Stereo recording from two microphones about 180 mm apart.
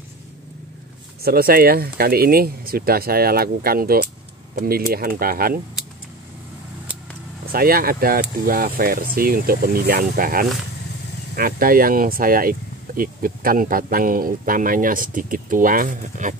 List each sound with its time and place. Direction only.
1.2 s speech: 55° right (ahead or behind)
7.5 s speech: 55° right (ahead or behind)